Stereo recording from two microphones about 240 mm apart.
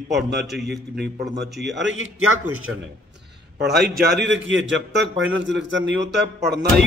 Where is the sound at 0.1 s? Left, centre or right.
Right.